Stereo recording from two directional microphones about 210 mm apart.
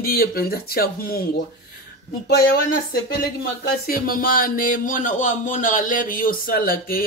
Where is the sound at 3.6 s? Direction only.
45° left (ahead or behind).